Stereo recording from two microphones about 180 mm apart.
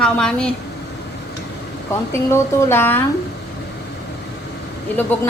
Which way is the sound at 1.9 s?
15° left (ahead or behind).